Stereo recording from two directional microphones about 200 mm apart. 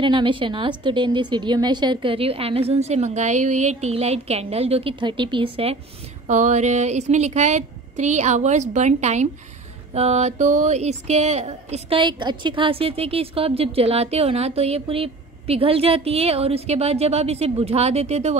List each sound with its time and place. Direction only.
0.0 s a woman's voice: 25° right (ahead or behind)
6.2 s speech: 35° right (ahead or behind)